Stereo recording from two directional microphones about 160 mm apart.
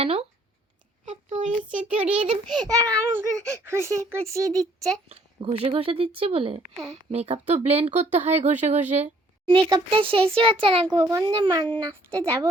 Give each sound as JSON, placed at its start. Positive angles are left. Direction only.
{"t": 0.0, "sound": "speech", "side_deg": -40}
{"t": 1.1, "sound": "child singing", "side_deg": -45}
{"t": 1.7, "sound": "child singing", "side_deg": -10}
{"t": 2.2, "sound": "a child's voice", "side_deg": -30}
{"t": 5.5, "sound": "a woman's voice", "side_deg": -40}
{"t": 9.5, "sound": "speech", "side_deg": -30}
{"t": 11.0, "sound": "a child's voice", "side_deg": -20}
{"t": 12.1, "sound": "child singing", "side_deg": -20}